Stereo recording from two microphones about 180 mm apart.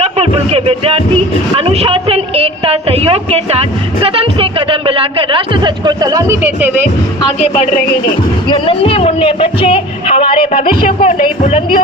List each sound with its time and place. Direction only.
0.0 s music: 35° right (ahead or behind)
1.5 s a woman's voice: 35° right (ahead or behind)
4.0 s music: 30° right (ahead or behind)
5.3 s speech: 25° right (ahead or behind)
7.2 s speech: 35° left (ahead or behind)
10.8 s speech: 40° left (ahead or behind)